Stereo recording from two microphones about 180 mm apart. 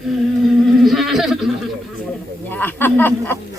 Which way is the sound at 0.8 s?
Centre (ahead or behind).